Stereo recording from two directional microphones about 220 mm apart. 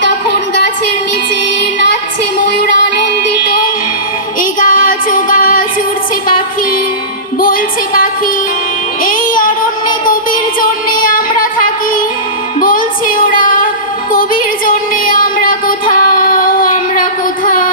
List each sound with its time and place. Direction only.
4.4 s child singing: 40° left (ahead or behind)
7.4 s music: 40° left (ahead or behind)
9.0 s music: 40° left (ahead or behind)
10.6 s music: 40° left (ahead or behind)